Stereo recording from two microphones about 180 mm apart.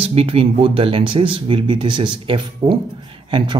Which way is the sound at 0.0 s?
30° right (ahead or behind).